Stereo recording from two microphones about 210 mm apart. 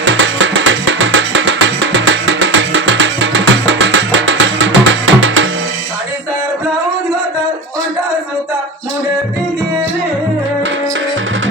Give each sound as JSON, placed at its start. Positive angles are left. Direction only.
{"t": 0.0, "sound": "music", "side_deg": -65}